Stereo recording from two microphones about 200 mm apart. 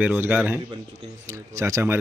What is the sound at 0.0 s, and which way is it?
Speech, 10° right (ahead or behind).